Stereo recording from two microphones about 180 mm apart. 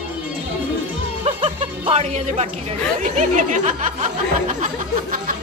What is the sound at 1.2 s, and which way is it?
Music, 30° right (ahead or behind).